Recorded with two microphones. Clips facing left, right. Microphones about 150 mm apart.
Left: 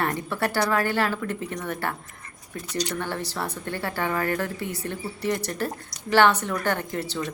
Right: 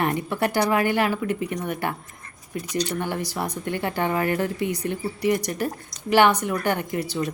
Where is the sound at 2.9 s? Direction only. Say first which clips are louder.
Right 2 dB; 15° right (ahead or behind).